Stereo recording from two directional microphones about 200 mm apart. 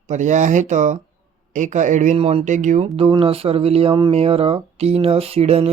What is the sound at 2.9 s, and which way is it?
Speech, 25° right (ahead or behind).